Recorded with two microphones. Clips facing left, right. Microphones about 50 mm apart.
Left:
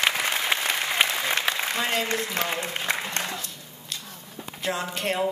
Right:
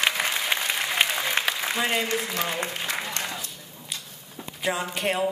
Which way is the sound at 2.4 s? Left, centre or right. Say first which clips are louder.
Left 1 dB; left.